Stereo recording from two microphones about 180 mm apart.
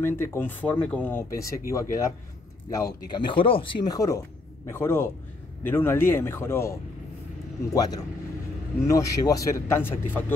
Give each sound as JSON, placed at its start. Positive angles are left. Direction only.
{"t": 0.0, "sound": "speech", "side_deg": 10}